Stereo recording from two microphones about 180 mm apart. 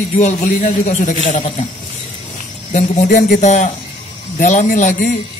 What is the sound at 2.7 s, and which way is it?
A man's voice, 40° left (ahead or behind).